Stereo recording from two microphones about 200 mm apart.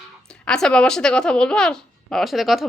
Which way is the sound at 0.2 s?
5° left (ahead or behind).